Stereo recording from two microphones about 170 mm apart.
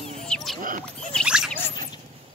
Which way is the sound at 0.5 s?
50° right (ahead or behind).